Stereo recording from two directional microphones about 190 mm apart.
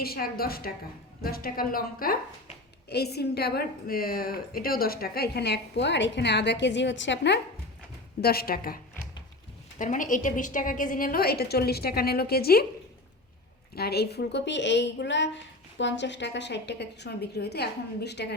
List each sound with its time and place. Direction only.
0.0 s a woman's voice: 50° left (ahead or behind); by 7.3 s 70° left (ahead or behind)
8.2 s a woman's voice: 55° left (ahead or behind)
13.7 s a woman's voice: 55° left (ahead or behind)